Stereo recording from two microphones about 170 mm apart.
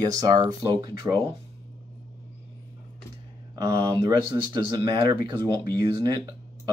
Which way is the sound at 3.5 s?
20° right (ahead or behind).